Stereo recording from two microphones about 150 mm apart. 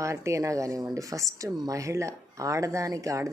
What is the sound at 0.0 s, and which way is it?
Speech, 20° right (ahead or behind).